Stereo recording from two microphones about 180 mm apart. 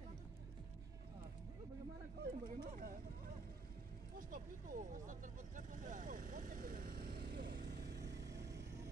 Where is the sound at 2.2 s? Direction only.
55° right (ahead or behind).